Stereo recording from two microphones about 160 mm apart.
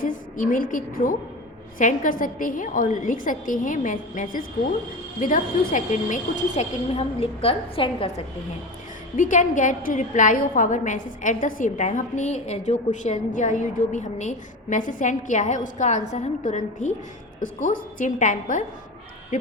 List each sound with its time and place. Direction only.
0.0 s a woman's voice: 55° left (ahead or behind)
6.6 s a woman's voice: 40° left (ahead or behind)
9.1 s a woman's voice: 55° left (ahead or behind)